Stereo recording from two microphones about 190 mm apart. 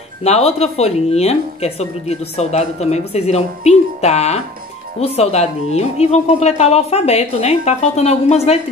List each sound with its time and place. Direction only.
0.2 s a woman's voice: 35° left (ahead or behind)